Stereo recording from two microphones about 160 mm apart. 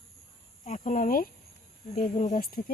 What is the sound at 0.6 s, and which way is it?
Speech, 50° left (ahead or behind).